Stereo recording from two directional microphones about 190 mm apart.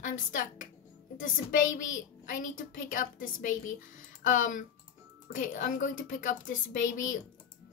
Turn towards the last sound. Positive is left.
turn(degrees=45)  # may be behind; listen again after turning